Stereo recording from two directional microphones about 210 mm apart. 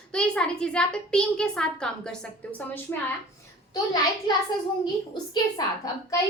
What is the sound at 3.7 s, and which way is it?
Speech, 20° left (ahead or behind).